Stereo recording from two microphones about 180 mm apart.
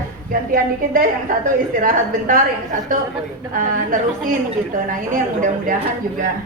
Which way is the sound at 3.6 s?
45° right (ahead or behind).